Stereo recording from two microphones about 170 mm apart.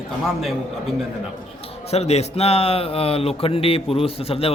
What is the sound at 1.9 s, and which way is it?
Speech, 40° left (ahead or behind).